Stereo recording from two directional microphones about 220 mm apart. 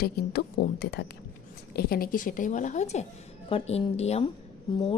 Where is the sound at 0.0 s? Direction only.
45° left (ahead or behind).